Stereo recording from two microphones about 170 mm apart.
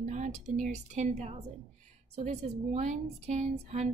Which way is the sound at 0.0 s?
45° right (ahead or behind).